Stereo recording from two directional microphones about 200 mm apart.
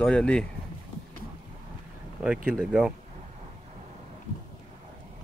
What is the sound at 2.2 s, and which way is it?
Speech, 5° right (ahead or behind).